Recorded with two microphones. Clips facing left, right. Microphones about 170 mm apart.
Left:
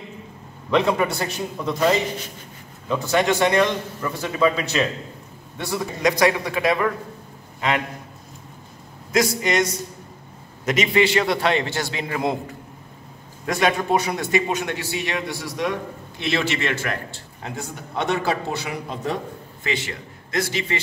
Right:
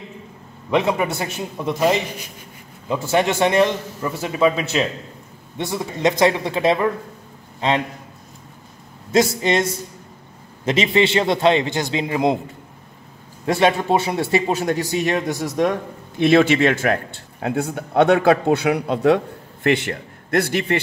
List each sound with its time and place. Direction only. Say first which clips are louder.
0.7 s a man's voice: even; 15° right (ahead or behind)
2.9 s a man's voice: right 1 dB; 25° right (ahead or behind)
9.1 s a man's voice: right 3 dB; 25° right (ahead or behind)
13.5 s a man's voice: right 3 dB; 30° right (ahead or behind); by 20.8 s 60° right (ahead or behind)